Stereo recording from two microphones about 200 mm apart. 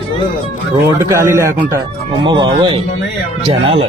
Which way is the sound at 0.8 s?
15° right (ahead or behind).